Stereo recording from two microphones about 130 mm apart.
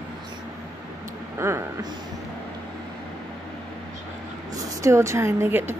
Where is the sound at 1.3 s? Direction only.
20° right (ahead or behind).